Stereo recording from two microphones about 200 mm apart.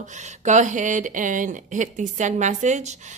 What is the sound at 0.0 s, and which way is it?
Speech, 35° right (ahead or behind).